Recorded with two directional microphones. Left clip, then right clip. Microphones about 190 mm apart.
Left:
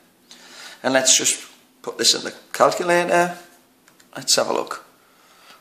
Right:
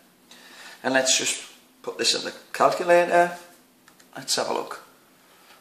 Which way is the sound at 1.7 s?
40° left (ahead or behind).